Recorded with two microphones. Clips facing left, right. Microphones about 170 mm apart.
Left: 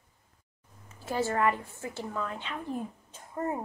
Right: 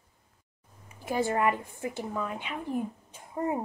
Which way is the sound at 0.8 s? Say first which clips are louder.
Right 2 dB; 15° right (ahead or behind).